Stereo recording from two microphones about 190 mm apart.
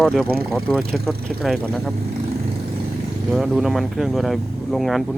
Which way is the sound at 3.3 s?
Centre (ahead or behind).